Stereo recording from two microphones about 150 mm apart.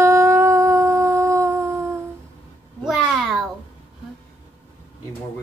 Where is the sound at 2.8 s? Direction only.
Centre (ahead or behind).